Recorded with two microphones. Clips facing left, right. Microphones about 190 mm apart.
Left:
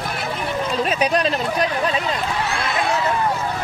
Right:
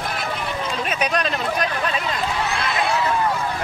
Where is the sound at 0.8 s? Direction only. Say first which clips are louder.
Left 4 dB; 30° left (ahead or behind).